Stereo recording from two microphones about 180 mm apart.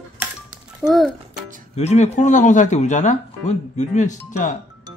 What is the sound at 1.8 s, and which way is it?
Speech, 40° left (ahead or behind).